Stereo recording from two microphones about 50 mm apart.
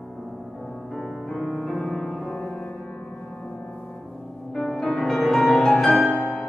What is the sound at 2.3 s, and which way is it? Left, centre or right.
Music, centre.